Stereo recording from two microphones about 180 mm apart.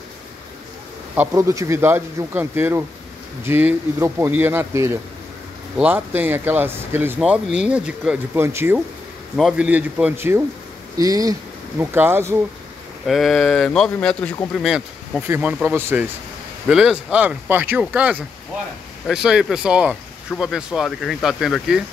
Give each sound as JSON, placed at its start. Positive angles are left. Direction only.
{"t": 1.1, "sound": "speech", "side_deg": -15}
{"t": 13.0, "sound": "speech", "side_deg": 0}
{"t": 15.2, "sound": "speech", "side_deg": -10}